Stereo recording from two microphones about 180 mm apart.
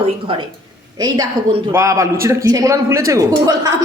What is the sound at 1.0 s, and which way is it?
A man's voice, 20° right (ahead or behind).